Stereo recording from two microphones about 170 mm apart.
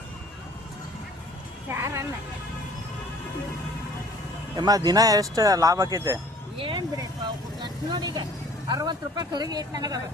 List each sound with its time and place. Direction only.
1.7 s speech: 15° right (ahead or behind)
4.5 s speech: 25° right (ahead or behind)
6.6 s a sound: 30° right (ahead or behind)
7.6 s speech: 25° right (ahead or behind)